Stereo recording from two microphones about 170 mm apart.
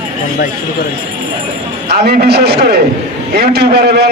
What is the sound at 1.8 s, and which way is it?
A man's voice, 70° right (ahead or behind).